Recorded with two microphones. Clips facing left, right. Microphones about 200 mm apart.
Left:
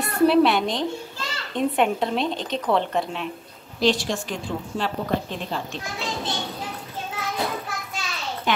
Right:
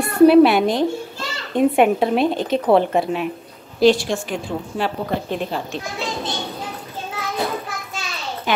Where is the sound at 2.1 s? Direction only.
55° right (ahead or behind).